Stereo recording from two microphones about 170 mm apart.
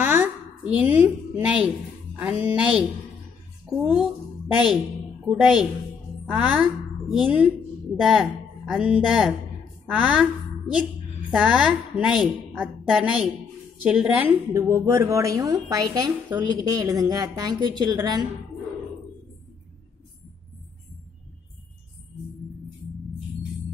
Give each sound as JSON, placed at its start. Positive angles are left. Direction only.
{"t": 0.0, "sound": "a sound", "side_deg": -10}
{"t": 1.0, "sound": "a woman's voice", "side_deg": -10}
{"t": 5.3, "sound": "a woman's voice", "side_deg": -5}
{"t": 11.2, "sound": "a woman's voice", "side_deg": -5}